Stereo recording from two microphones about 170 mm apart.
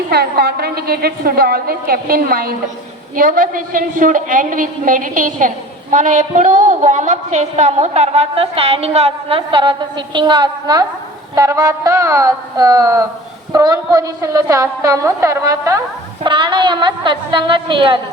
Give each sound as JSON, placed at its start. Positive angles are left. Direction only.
{"t": 0.1, "sound": "a woman's voice", "side_deg": -70}